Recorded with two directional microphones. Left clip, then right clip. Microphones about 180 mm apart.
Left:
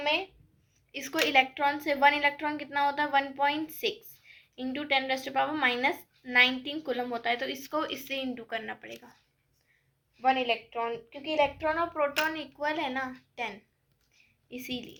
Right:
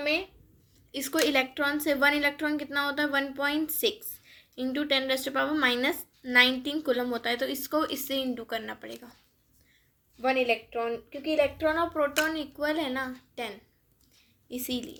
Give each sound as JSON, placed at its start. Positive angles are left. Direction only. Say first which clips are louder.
{"t": 0.9, "sound": "a woman's voice", "louder": "right 2 dB", "side_deg": -30}
{"t": 10.2, "sound": "a woman's voice", "louder": "right 1 dB", "side_deg": -30}